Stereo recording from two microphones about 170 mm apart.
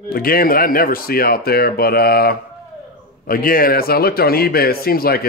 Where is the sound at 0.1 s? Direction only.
60° left (ahead or behind).